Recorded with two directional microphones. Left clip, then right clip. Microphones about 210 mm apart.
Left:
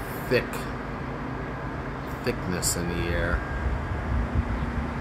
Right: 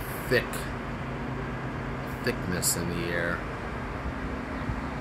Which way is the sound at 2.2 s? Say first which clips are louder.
Left 1 dB; 5° left (ahead or behind).